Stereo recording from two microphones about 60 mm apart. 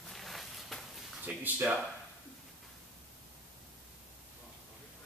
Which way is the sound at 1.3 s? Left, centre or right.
Right.